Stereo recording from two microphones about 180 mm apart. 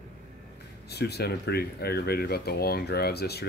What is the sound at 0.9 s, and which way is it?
Speech, 65° left (ahead or behind).